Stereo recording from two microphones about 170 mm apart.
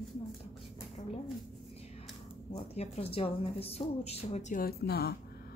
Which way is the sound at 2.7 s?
35° left (ahead or behind).